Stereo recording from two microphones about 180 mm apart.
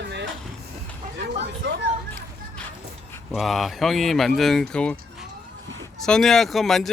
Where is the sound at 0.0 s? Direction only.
70° right (ahead or behind).